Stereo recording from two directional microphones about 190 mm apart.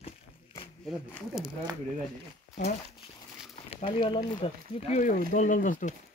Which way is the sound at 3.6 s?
30° left (ahead or behind).